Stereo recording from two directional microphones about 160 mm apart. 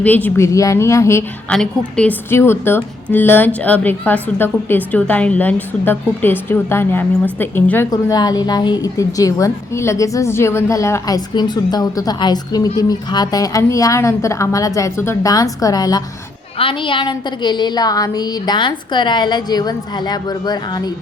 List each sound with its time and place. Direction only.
0.0 s a woman's voice: 10° left (ahead or behind)
8.1 s a woman's voice: 25° left (ahead or behind)